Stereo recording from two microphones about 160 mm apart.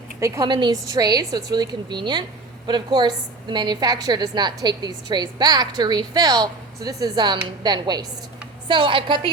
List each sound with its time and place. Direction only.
0.2 s a woman's voice: 20° right (ahead or behind)